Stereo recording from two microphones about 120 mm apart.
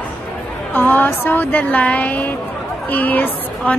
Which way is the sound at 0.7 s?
15° left (ahead or behind).